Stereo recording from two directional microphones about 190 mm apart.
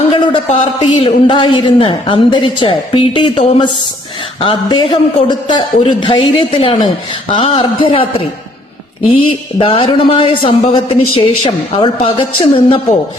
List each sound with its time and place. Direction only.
0.1 s a sound: 35° left (ahead or behind)
0.9 s a man's voice: 25° left (ahead or behind)
9.0 s a man's voice: 30° left (ahead or behind)